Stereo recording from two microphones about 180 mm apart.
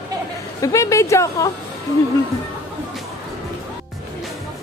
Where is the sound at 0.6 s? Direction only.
15° left (ahead or behind).